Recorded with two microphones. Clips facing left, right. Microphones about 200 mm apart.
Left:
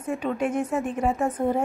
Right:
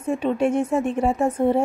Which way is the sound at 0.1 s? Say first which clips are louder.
Right 5 dB; 25° right (ahead or behind).